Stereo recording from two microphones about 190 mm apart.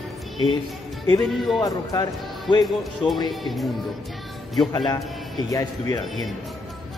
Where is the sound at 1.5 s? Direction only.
20° left (ahead or behind).